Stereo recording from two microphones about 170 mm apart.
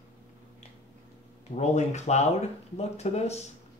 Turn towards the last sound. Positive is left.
turn(degrees=40)  # may be behind; listen again after turning